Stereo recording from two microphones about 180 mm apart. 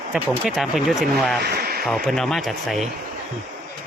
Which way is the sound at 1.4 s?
60° right (ahead or behind).